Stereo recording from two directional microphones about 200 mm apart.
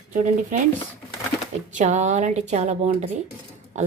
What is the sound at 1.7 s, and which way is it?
Speech, 35° right (ahead or behind).